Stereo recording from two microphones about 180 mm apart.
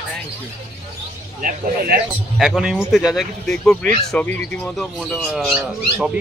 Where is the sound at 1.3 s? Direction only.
50° right (ahead or behind).